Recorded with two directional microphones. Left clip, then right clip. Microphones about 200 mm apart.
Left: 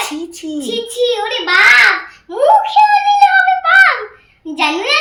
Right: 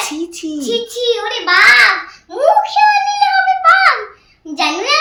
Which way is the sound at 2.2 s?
15° right (ahead or behind).